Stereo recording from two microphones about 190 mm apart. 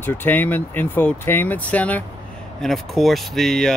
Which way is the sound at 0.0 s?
10° left (ahead or behind).